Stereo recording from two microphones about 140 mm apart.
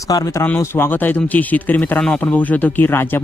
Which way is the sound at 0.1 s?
25° left (ahead or behind).